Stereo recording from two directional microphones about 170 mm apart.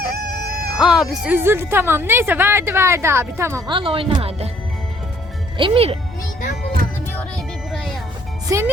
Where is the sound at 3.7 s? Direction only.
30° right (ahead or behind).